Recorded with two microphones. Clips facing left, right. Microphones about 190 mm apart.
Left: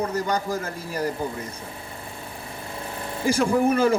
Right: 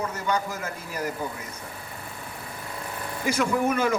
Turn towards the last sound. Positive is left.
turn(degrees=30)  # may be behind; listen again after turning